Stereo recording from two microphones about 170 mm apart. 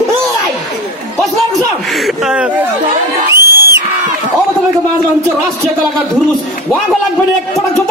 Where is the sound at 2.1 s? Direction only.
5° right (ahead or behind).